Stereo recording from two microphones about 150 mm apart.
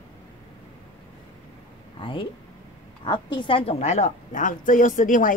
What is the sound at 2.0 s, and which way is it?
A woman's voice, 35° left (ahead or behind).